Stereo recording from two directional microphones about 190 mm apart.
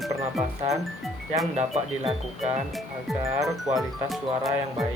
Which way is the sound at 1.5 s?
35° right (ahead or behind).